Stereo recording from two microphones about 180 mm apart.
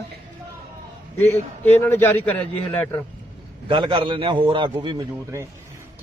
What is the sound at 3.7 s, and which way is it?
A man's voice, 30° right (ahead or behind).